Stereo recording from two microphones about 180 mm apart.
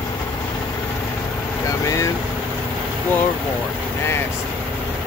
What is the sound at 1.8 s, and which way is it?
Vehicle, 20° left (ahead or behind).